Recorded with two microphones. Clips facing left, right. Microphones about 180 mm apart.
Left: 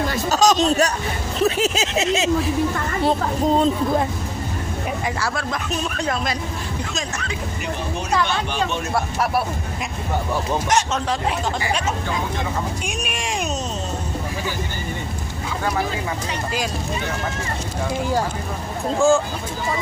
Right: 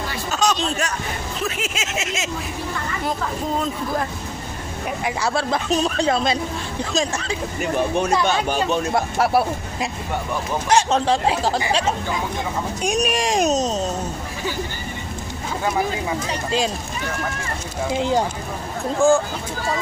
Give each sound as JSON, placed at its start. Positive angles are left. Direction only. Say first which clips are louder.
{"t": 0.1, "sound": "a sound", "louder": "left 3 dB", "side_deg": 40}
{"t": 3.0, "sound": "a child's voice", "louder": "left 7 dB", "side_deg": 30}
{"t": 5.2, "sound": "a man's voice", "louder": "right 3 dB", "side_deg": -30}
{"t": 8.5, "sound": "a man's voice", "louder": "right 3 dB", "side_deg": -40}
{"t": 10.7, "sound": "a man's voice", "louder": "right 6 dB", "side_deg": -30}
{"t": 18.9, "sound": "speech", "louder": "even", "side_deg": -15}